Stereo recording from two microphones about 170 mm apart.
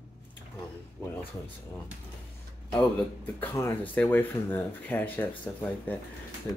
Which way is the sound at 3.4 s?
15° left (ahead or behind).